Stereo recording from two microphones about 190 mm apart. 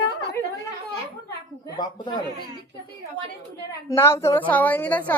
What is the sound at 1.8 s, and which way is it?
Speech, 25° left (ahead or behind).